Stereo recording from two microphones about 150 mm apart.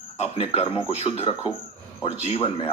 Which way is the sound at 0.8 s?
45° left (ahead or behind).